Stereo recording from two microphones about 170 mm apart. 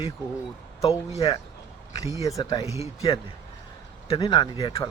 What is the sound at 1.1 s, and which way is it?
Speech, 35° left (ahead or behind).